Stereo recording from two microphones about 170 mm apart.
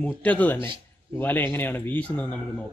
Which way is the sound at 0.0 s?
10° left (ahead or behind).